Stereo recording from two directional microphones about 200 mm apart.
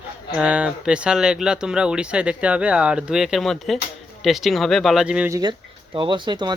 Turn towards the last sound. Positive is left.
turn(degrees=-20)  # may be behind; listen again after turning